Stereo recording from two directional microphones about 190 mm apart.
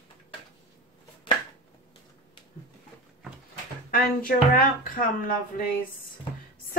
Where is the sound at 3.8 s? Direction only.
50° left (ahead or behind).